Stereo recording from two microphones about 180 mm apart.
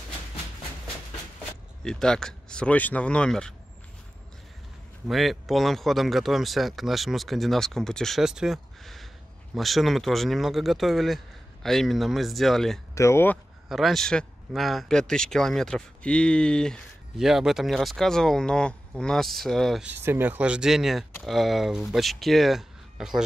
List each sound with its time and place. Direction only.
1.9 s speech: 5° left (ahead or behind)
5.0 s speech: centre (ahead or behind)
12.9 s speech: 15° left (ahead or behind)
13.7 s speech: centre (ahead or behind)
19.9 s speech: 10° right (ahead or behind)